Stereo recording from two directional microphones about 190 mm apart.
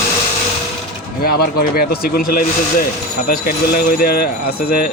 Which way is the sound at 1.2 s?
55° left (ahead or behind).